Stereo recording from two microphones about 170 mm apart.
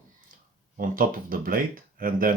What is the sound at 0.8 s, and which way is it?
Speech, 55° right (ahead or behind).